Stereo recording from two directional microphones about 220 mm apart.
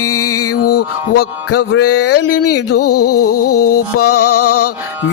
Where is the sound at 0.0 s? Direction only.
90° left.